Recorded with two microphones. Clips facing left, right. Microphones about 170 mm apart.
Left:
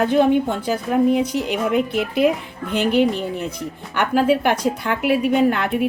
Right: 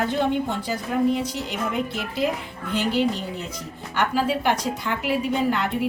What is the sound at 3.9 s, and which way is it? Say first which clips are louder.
A woman's voice: left 6 dB; 60° left (ahead or behind).